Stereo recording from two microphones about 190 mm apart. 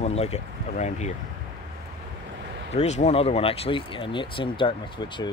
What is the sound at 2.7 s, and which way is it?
Speech, 35° left (ahead or behind).